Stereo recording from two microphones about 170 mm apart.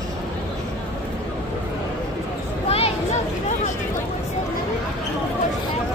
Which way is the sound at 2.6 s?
35° left (ahead or behind).